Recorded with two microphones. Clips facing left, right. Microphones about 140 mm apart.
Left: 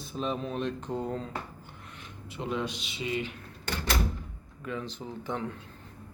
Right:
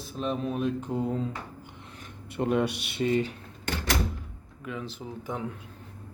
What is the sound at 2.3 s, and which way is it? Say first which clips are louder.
Speech: right 7 dB; 55° right (ahead or behind).